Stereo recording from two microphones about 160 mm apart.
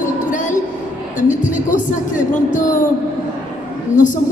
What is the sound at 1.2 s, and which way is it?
A woman's voice, 55° left (ahead or behind).